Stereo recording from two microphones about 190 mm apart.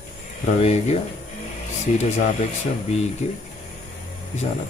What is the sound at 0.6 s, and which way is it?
Speech, 35° left (ahead or behind).